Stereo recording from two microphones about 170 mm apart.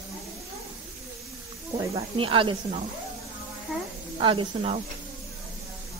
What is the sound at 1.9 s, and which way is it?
Speech, 30° right (ahead or behind).